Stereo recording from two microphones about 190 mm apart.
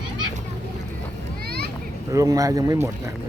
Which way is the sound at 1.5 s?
55° right (ahead or behind).